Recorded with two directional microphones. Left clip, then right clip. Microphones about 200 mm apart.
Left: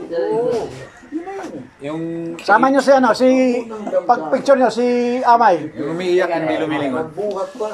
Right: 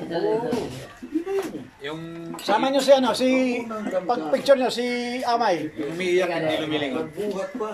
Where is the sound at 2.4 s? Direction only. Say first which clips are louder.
Left 9 dB; 15° right (ahead or behind).